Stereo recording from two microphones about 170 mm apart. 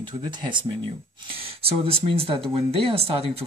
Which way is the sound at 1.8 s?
35° right (ahead or behind).